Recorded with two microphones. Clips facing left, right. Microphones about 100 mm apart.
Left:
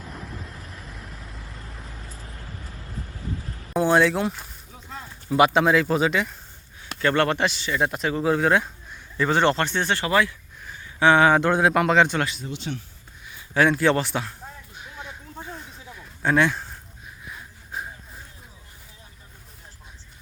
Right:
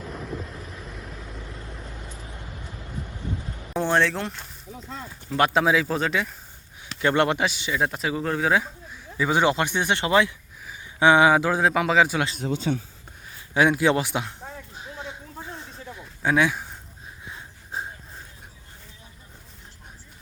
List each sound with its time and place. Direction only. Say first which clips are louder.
0.0 s vehicle: right 4 dB; centre (ahead or behind)
3.8 s speech: left 3 dB; 5° left (ahead or behind)
7.0 s speech: even; 15° right (ahead or behind)
7.7 s speech: left 1 dB; centre (ahead or behind)
12.4 s speech: right 7 dB; 90° right
13.5 s speech: even; 15° right (ahead or behind)
14.8 s a sound: right 2 dB; 25° right (ahead or behind)
16.2 s speech: left 1 dB; 5° right (ahead or behind)
17.2 s a sound: even; 25° right (ahead or behind)